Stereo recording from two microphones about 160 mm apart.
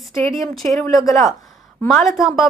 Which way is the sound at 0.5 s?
Centre (ahead or behind).